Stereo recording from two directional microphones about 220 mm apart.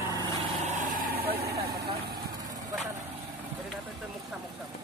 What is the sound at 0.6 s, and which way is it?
Vehicle, 35° right (ahead or behind).